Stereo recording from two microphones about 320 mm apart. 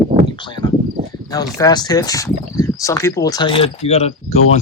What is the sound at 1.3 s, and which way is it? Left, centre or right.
Speech, centre.